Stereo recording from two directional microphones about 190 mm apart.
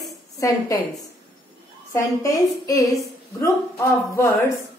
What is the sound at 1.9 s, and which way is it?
A woman's voice, 15° left (ahead or behind).